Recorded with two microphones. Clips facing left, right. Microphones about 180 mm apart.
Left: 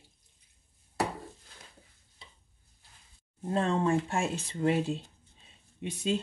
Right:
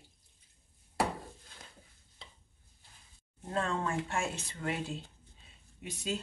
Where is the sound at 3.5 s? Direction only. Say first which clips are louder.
Left 6 dB; 30° left (ahead or behind).